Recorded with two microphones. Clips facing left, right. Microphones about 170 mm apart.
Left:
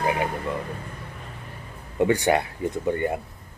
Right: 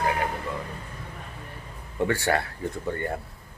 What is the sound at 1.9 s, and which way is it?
Speech, 15° left (ahead or behind).